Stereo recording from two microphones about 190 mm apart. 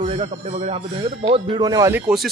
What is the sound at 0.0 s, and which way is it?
Speech, 35° right (ahead or behind).